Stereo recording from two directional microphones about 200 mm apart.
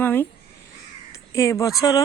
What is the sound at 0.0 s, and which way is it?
Speech, 10° left (ahead or behind).